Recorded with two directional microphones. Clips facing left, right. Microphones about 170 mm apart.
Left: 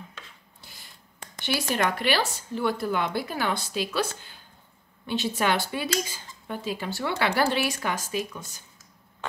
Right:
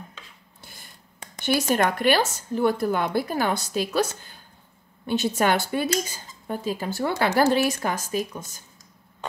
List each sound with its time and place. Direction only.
1.4 s speech: 50° right (ahead or behind)